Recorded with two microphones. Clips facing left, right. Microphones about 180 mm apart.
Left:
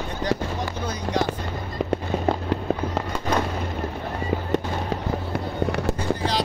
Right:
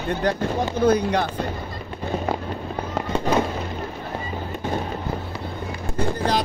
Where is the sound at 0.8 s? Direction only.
60° right (ahead or behind).